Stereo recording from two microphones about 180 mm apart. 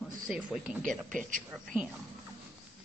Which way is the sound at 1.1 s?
45° right (ahead or behind).